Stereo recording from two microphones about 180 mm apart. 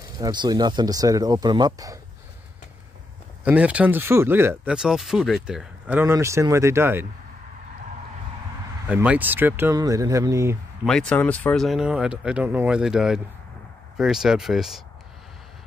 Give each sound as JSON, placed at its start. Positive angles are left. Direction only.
{"t": 0.2, "sound": "speech", "side_deg": -25}
{"t": 3.4, "sound": "speech", "side_deg": -5}
{"t": 8.8, "sound": "speech", "side_deg": -10}
{"t": 10.9, "sound": "speech", "side_deg": 5}